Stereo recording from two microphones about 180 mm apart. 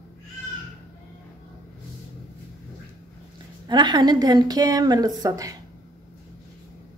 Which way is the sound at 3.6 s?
25° right (ahead or behind).